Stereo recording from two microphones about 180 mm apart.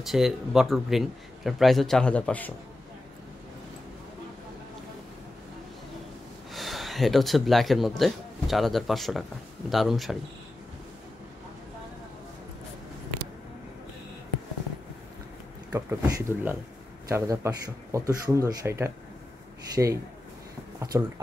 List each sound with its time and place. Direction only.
0.0 s speech: centre (ahead or behind)
6.5 s speech: centre (ahead or behind)
15.7 s speech: 15° right (ahead or behind)